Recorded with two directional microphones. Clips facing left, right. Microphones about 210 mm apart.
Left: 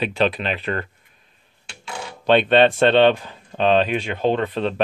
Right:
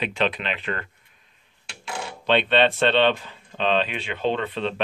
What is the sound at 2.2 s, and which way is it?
Speech, 45° left (ahead or behind).